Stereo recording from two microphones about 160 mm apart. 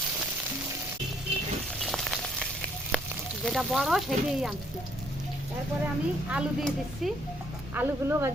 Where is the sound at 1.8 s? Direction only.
Centre (ahead or behind).